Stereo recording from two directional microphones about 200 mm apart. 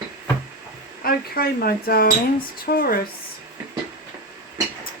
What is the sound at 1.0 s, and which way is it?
Speech, 50° left (ahead or behind).